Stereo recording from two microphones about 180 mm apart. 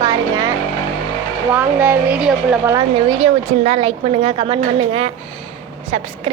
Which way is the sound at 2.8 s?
25° right (ahead or behind).